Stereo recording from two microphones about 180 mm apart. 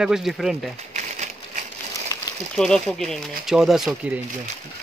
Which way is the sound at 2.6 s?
5° left (ahead or behind).